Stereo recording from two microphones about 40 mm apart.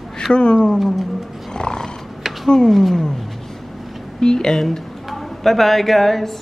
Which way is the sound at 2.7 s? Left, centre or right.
Centre.